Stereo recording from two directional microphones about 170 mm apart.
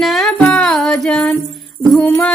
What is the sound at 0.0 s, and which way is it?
Music, centre (ahead or behind).